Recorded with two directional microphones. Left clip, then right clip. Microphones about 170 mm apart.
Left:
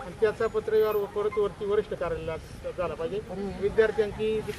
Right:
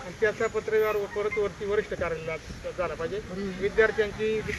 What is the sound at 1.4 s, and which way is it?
Speech, 10° left (ahead or behind).